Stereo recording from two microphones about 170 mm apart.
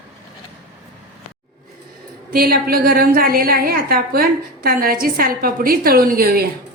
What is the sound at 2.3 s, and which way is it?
A woman's voice, 65° right (ahead or behind).